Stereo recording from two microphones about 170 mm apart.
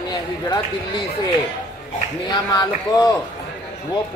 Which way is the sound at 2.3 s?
20° left (ahead or behind).